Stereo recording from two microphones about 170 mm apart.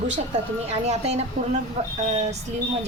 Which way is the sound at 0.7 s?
40° right (ahead or behind).